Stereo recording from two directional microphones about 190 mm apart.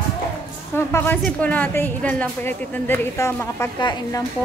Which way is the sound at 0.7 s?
10° left (ahead or behind).